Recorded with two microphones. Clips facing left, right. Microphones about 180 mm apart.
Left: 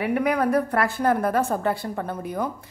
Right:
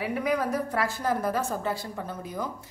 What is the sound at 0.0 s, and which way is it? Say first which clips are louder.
A woman's voice: left 5 dB; 60° left (ahead or behind).